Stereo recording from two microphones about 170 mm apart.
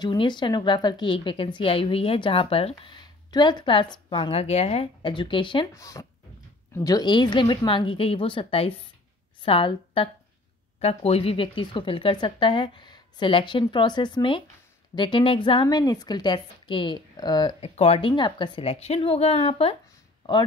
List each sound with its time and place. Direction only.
0.0 s a woman's voice: 25° left (ahead or behind)